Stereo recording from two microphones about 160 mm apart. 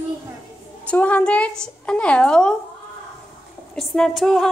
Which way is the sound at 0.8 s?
10° left (ahead or behind).